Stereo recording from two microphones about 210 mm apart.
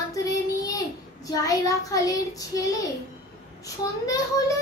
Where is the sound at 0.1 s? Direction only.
15° left (ahead or behind).